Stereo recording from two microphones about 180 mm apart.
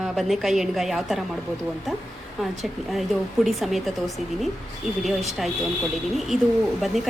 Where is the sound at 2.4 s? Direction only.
Centre (ahead or behind).